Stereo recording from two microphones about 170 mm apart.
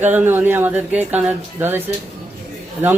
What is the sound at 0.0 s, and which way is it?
Speech, 10° right (ahead or behind).